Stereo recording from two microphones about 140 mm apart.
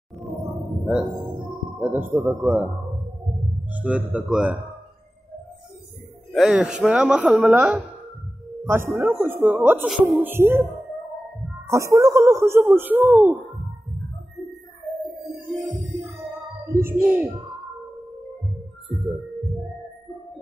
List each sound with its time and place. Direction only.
1.8 s a woman's voice: 10° right (ahead or behind)
3.7 s a woman's voice: 10° right (ahead or behind)
6.3 s a woman's voice: centre (ahead or behind)
16.6 s a sound: 25° right (ahead or behind)
17.0 s a woman's voice: 15° right (ahead or behind)